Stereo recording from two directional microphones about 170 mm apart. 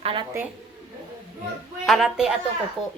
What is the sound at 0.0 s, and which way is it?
Speech, 30° right (ahead or behind).